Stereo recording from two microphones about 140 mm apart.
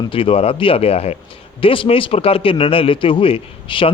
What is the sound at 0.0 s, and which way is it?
A man's voice, 40° left (ahead or behind).